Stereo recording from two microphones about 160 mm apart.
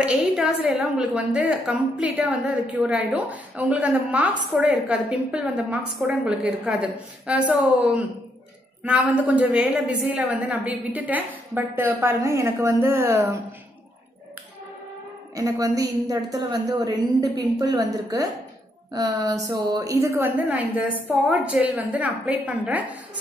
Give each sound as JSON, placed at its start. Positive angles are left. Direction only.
{"t": 0.0, "sound": "a woman's voice", "side_deg": -10}
{"t": 15.3, "sound": "a woman's voice", "side_deg": -20}